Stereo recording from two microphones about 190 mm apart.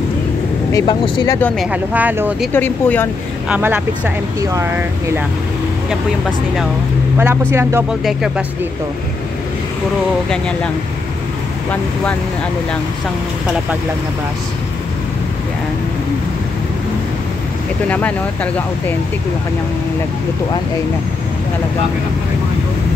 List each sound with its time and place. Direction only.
0.7 s speech: 15° left (ahead or behind)
1.6 s speech: 5° right (ahead or behind)
2.5 s speech: 10° left (ahead or behind)
3.4 s speech: 5° right (ahead or behind)
7.2 s speech: 15° right (ahead or behind)
8.0 s speech: centre (ahead or behind)
11.7 s speech: 5° left (ahead or behind)
17.8 s speech: 10° left (ahead or behind)